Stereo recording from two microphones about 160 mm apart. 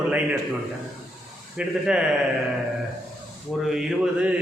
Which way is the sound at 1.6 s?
5° right (ahead or behind).